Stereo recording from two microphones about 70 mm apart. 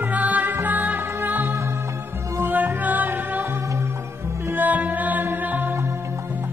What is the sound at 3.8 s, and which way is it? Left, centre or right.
Music, right.